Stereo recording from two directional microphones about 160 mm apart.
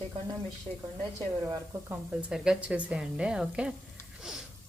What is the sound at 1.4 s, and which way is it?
Speech, 20° right (ahead or behind).